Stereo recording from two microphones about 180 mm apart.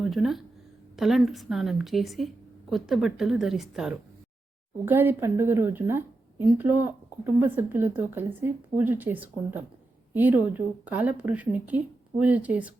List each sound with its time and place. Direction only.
0.0 s a woman's voice: centre (ahead or behind)